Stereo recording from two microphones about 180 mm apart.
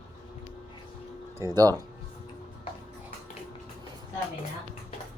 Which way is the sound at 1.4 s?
20° right (ahead or behind).